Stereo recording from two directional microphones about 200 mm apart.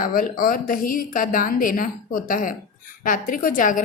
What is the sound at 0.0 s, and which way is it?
A woman's voice, 45° left (ahead or behind).